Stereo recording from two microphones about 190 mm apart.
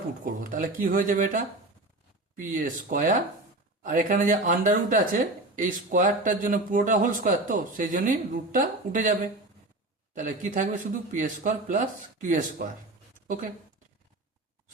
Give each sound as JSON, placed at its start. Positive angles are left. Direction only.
{"t": 0.5, "sound": "speech", "side_deg": -45}
{"t": 10.2, "sound": "speech", "side_deg": -40}